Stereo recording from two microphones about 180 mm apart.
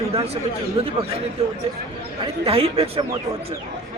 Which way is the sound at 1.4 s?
35° right (ahead or behind).